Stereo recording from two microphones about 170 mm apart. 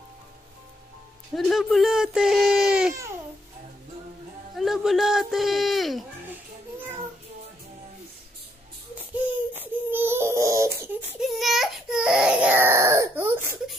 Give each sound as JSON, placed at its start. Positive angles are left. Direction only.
{"t": 1.3, "sound": "speech", "side_deg": 0}
{"t": 4.6, "sound": "speech", "side_deg": 0}
{"t": 9.2, "sound": "a sound", "side_deg": -10}
{"t": 11.0, "sound": "speech", "side_deg": -5}